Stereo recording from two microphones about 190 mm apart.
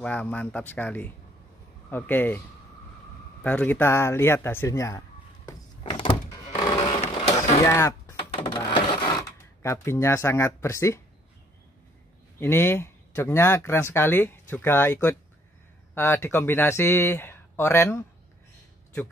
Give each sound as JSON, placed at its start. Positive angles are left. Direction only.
{"t": 0.0, "sound": "speech", "side_deg": 5}
{"t": 3.4, "sound": "speech", "side_deg": 10}
{"t": 5.5, "sound": "a sound", "side_deg": 25}
{"t": 7.6, "sound": "speech", "side_deg": 15}
{"t": 8.2, "sound": "printer", "side_deg": 25}
{"t": 9.6, "sound": "speech", "side_deg": 15}
{"t": 12.4, "sound": "speech", "side_deg": 10}